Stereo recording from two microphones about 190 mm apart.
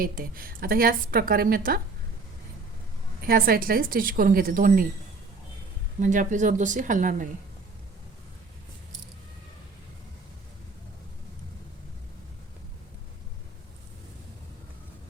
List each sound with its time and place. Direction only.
0.0 s a woman's voice: 50° right (ahead or behind)
3.2 s a woman's voice: 50° right (ahead or behind)
6.0 s a woman's voice: 40° right (ahead or behind)